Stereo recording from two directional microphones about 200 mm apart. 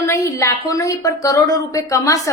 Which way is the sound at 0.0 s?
15° left (ahead or behind).